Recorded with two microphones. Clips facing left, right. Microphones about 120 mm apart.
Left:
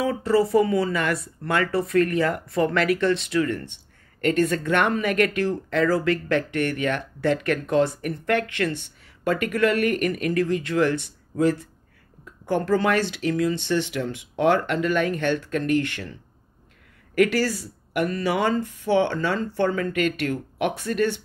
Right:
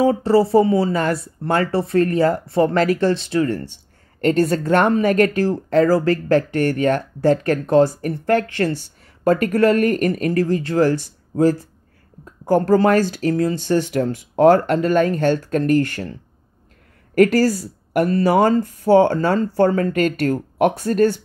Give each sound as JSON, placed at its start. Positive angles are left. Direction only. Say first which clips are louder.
{"t": 0.0, "sound": "speech", "louder": "right 6 dB", "side_deg": -35}